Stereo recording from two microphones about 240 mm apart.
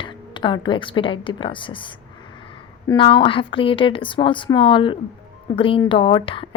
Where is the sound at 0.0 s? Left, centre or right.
Centre.